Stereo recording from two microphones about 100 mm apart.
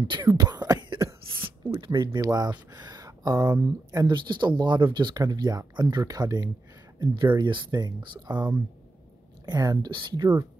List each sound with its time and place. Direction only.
0.1 s a sound: 45° right (ahead or behind)
2.2 s speech: 40° right (ahead or behind)
2.7 s a sound: 40° right (ahead or behind)
3.5 s speech: 35° right (ahead or behind)
4.1 s speech: 50° right (ahead or behind)
9.5 s speech: 40° right (ahead or behind)
9.8 s speech: 50° right (ahead or behind)